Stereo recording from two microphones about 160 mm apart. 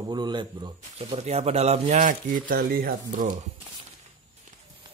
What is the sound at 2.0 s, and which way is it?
Speech, 60° right (ahead or behind).